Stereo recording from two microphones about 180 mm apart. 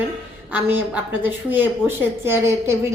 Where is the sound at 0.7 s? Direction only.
10° right (ahead or behind).